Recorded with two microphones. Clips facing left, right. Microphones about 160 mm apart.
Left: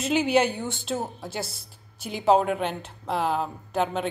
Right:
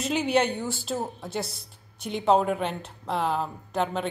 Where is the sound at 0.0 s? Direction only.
Centre (ahead or behind).